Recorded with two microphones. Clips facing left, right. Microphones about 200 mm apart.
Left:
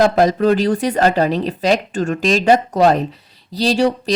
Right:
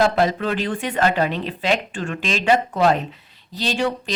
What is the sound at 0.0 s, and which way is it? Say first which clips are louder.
Speech: left 5 dB; 40° left (ahead or behind).